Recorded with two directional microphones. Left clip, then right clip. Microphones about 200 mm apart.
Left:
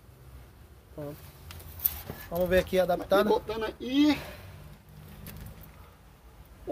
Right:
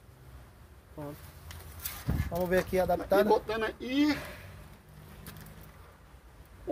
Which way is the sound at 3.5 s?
10° left (ahead or behind).